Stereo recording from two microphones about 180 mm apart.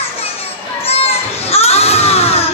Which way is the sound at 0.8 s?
35° left (ahead or behind).